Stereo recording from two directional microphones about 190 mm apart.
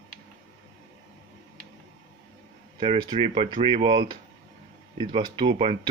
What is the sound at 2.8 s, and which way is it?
Speech, 25° right (ahead or behind).